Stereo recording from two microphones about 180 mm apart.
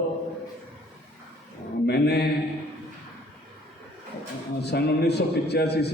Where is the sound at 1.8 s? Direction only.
65° left (ahead or behind).